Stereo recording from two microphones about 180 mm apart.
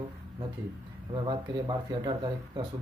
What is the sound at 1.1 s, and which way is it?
Speech, 25° right (ahead or behind).